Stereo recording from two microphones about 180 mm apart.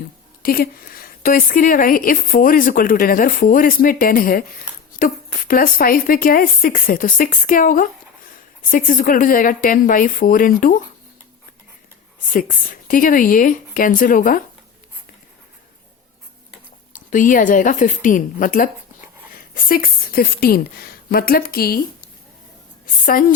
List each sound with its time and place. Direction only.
0.4 s a woman's voice: 55° left (ahead or behind)
12.3 s a woman's voice: 50° left (ahead or behind)
17.1 s a woman's voice: 45° left (ahead or behind)